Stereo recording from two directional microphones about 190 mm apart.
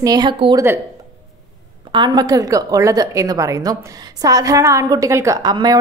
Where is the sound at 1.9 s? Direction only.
25° right (ahead or behind).